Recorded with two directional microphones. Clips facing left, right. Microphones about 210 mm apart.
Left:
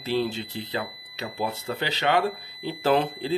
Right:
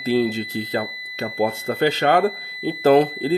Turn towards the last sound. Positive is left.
turn(degrees=-40)  # may be behind; listen again after turning